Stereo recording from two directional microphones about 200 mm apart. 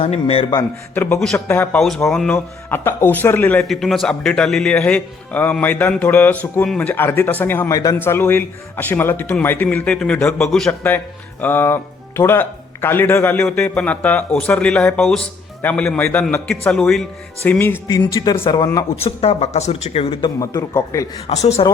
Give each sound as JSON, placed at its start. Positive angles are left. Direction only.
{"t": 0.0, "sound": "a man's voice", "side_deg": 30}
{"t": 0.9, "sound": "a man's voice", "side_deg": 5}
{"t": 18.9, "sound": "speech", "side_deg": 30}
{"t": 20.4, "sound": "speech", "side_deg": 15}
{"t": 21.2, "sound": "speech", "side_deg": 30}